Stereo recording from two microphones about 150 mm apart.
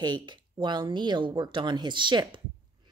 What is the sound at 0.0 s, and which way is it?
A woman's voice, 30° right (ahead or behind).